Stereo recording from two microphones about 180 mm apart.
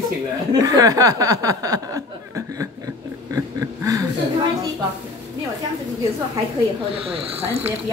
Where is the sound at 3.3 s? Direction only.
20° right (ahead or behind).